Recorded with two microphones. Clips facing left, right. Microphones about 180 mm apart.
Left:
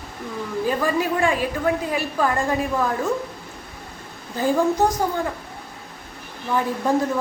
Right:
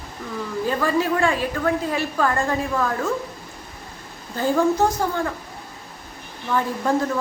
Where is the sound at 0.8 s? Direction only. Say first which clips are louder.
Right 3 dB; 15° left (ahead or behind).